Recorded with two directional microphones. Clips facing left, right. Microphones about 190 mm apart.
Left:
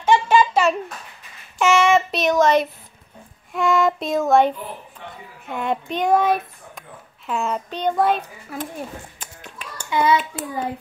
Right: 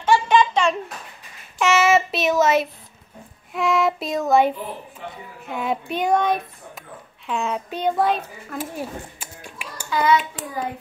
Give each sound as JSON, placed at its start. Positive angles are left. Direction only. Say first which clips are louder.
{"t": 0.0, "sound": "a sound", "louder": "left 1 dB", "side_deg": 10}
{"t": 3.5, "sound": "a child's voice", "louder": "left 2 dB", "side_deg": 0}
{"t": 9.8, "sound": "a child's voice", "louder": "even", "side_deg": 25}